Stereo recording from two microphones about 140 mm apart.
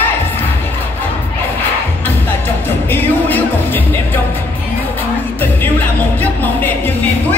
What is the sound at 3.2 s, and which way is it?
Music, 15° left (ahead or behind).